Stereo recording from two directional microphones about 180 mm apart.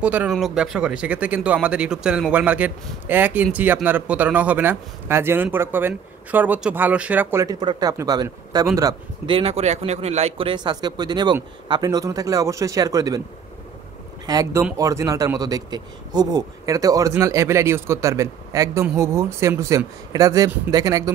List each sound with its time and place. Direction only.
0.0 s a man's voice: 5° right (ahead or behind)
9.3 s speech: 35° right (ahead or behind)
14.2 s a man's voice: 20° right (ahead or behind)